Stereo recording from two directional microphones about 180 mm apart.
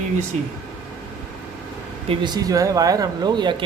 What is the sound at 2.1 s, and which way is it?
Speech, 25° right (ahead or behind).